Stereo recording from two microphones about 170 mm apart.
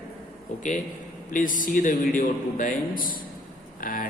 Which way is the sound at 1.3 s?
50° left (ahead or behind).